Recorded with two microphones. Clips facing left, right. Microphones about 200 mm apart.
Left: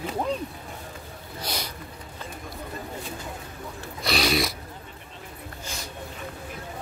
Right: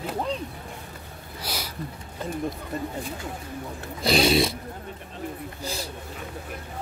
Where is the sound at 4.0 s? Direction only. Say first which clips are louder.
Right 5 dB; 30° right (ahead or behind).